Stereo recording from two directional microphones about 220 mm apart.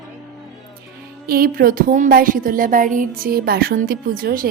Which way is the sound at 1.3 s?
40° right (ahead or behind).